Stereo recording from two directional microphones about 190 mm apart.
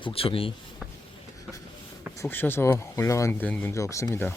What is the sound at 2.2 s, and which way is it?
Speech, 10° left (ahead or behind).